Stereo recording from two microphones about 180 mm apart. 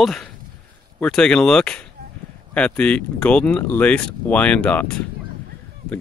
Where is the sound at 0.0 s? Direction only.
Centre (ahead or behind).